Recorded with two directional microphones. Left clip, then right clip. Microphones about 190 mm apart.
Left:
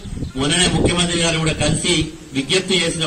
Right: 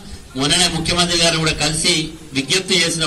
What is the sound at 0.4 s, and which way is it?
A man's voice, 35° left (ahead or behind).